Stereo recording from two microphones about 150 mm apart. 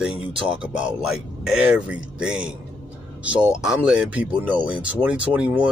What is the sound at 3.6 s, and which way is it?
Speech, 5° right (ahead or behind).